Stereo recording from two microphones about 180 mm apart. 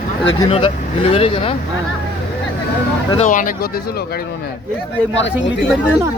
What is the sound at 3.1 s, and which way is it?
Speech, 45° left (ahead or behind).